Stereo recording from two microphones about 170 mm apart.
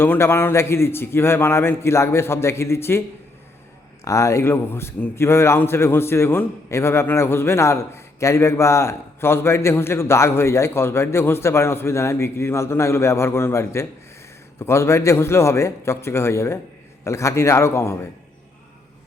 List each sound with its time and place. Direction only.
0.0 s a man's voice: 10° left (ahead or behind)
4.0 s a man's voice: 15° left (ahead or behind)